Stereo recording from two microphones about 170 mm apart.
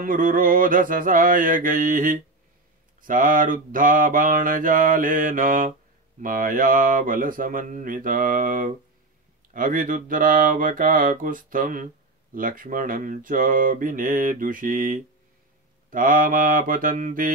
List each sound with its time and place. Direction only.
0.0 s mantra: 55° right (ahead or behind)